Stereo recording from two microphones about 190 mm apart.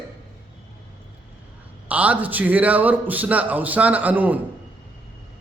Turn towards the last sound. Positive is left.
turn(degrees=-10)  # may be behind; listen again after turning